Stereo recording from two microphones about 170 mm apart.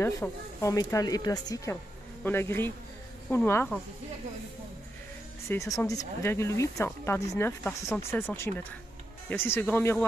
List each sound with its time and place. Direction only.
0.0 s speech: 15° left (ahead or behind)
5.5 s speech: 15° left (ahead or behind)